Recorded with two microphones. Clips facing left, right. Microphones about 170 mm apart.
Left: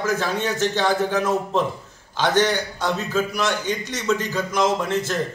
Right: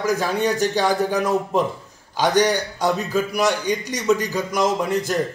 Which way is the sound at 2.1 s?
15° right (ahead or behind).